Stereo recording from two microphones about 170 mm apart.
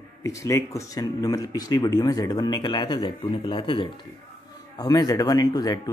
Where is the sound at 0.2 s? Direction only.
20° left (ahead or behind).